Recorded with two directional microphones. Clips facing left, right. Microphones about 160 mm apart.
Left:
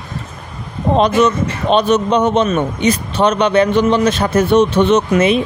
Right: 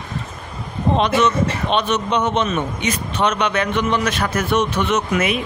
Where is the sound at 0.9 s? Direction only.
40° left (ahead or behind).